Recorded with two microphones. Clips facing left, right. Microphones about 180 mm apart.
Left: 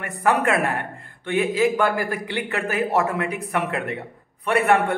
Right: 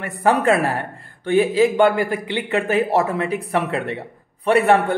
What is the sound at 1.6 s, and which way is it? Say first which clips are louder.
A man's voice: right 4 dB; 20° right (ahead or behind).